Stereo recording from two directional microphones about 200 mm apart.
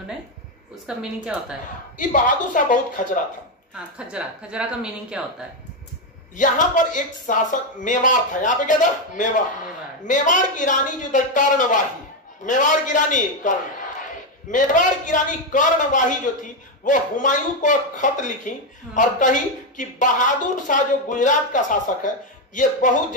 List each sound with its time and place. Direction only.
0.8 s a woman's voice: 5° right (ahead or behind)
2.0 s speech: 40° left (ahead or behind)
4.1 s a woman's voice: 5° right (ahead or behind)
6.3 s speech: 40° left (ahead or behind)